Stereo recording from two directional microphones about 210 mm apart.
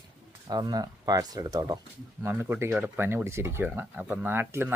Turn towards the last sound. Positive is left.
turn(degrees=-10)  # may be behind; listen again after turning